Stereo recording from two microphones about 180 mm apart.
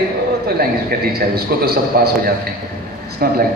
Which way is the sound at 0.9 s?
60° right (ahead or behind).